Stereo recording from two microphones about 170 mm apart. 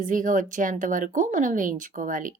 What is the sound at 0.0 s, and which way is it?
A woman's voice, 50° right (ahead or behind).